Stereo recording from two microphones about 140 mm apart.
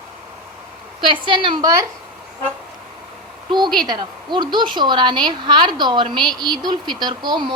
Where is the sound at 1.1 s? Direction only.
35° right (ahead or behind).